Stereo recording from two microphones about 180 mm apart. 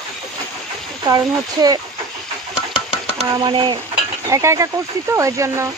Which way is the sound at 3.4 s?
25° right (ahead or behind).